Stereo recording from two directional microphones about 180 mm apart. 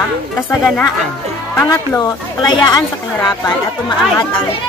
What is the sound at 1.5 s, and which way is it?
A woman's voice, 15° left (ahead or behind).